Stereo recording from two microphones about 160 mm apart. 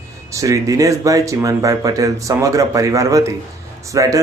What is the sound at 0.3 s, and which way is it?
Speech, 20° right (ahead or behind).